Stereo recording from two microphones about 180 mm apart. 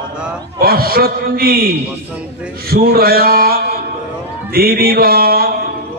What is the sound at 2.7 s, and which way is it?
Mantra, 55° right (ahead or behind).